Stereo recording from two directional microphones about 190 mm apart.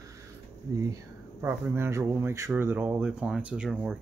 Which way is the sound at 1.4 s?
15° right (ahead or behind).